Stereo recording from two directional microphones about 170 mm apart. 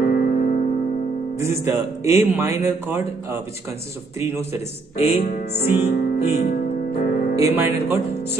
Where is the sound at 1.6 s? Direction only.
15° right (ahead or behind).